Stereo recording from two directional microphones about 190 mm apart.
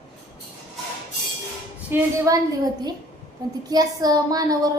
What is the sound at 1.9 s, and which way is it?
A child's voice, 20° right (ahead or behind).